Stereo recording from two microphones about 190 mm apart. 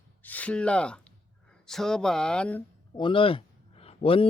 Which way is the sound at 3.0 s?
25° left (ahead or behind).